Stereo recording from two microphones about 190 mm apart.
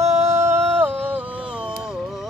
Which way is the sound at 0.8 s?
10° right (ahead or behind).